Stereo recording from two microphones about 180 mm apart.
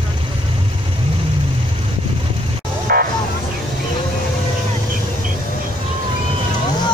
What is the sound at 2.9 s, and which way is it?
Vehicle, 55° right (ahead or behind).